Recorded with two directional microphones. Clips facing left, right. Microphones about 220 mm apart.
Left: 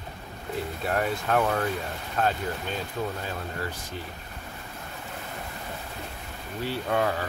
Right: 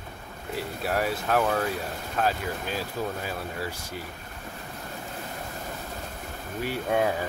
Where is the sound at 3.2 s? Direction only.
10° right (ahead or behind).